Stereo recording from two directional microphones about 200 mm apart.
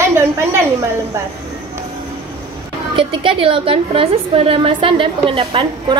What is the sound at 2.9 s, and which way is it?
A woman's voice, 25° right (ahead or behind).